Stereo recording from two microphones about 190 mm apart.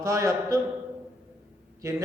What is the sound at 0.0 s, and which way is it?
Speech, 15° right (ahead or behind).